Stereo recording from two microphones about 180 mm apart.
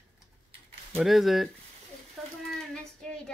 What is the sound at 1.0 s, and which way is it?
Speech, centre (ahead or behind).